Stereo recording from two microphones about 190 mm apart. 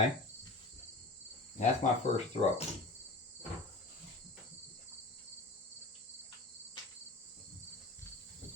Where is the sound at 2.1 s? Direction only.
35° left (ahead or behind).